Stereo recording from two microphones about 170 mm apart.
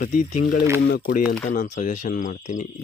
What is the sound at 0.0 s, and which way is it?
Speech, 50° left (ahead or behind).